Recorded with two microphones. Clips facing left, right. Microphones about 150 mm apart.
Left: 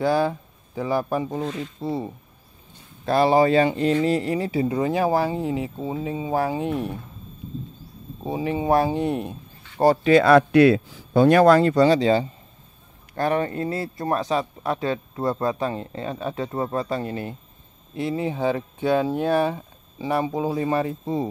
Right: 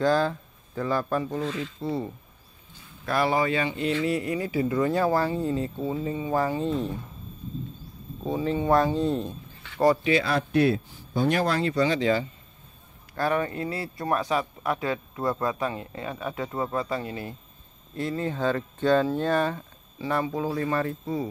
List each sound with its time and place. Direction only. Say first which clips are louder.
0.0 s speech: left 2 dB; 10° left (ahead or behind)
3.1 s speech: left 7 dB; 30° left (ahead or behind); by 7.0 s 10° left (ahead or behind)
8.2 s speech: left 1 dB; 15° left (ahead or behind)
8.9 s speech: left 1 dB; 70° left (ahead or behind)
10.0 s speech: left 9 dB; 55° left (ahead or behind); by 11.2 s 90° left
11.2 s speech: left 10 dB; 55° left (ahead or behind); by 17.3 s 35° left (ahead or behind)
17.9 s speech: left 3 dB; 15° left (ahead or behind)